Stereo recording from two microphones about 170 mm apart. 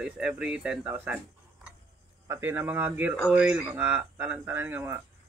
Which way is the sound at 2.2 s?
15° right (ahead or behind).